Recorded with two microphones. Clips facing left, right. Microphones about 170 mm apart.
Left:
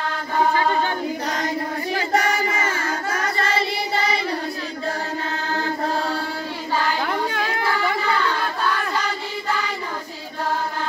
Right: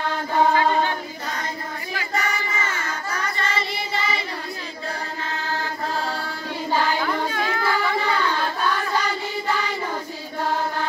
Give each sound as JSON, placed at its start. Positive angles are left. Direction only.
{"t": 2.0, "sound": "child singing", "side_deg": 45}